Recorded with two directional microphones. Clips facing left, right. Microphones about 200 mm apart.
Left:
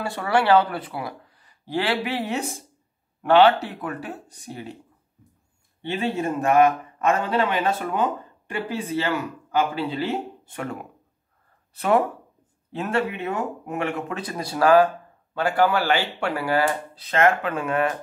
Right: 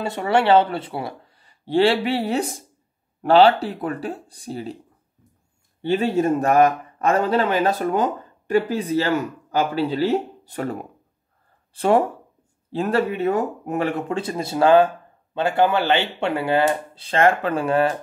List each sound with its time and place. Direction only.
0.0 s a man's voice: 20° right (ahead or behind)
5.8 s a man's voice: 40° right (ahead or behind)